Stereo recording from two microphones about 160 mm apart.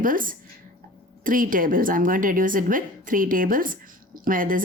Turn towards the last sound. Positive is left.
turn(degrees=-60)  # may be behind; listen again after turning